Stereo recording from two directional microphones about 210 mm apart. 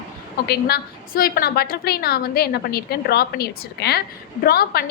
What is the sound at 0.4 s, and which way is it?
A woman's voice, 50° left (ahead or behind).